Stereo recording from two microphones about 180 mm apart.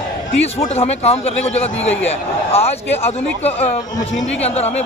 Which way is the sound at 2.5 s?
35° left (ahead or behind).